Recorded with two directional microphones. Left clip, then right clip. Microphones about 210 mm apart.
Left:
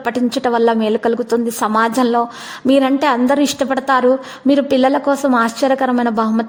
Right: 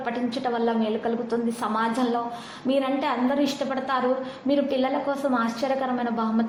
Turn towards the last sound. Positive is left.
turn(degrees=50)  # may be behind; listen again after turning